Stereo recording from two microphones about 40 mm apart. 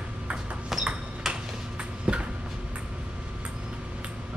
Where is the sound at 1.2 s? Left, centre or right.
Centre.